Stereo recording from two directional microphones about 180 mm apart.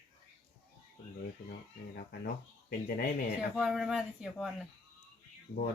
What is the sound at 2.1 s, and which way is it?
Speech, 60° left (ahead or behind).